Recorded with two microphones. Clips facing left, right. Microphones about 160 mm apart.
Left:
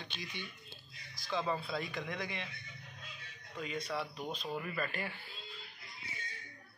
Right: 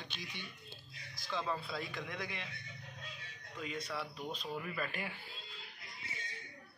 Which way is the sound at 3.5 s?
Centre (ahead or behind).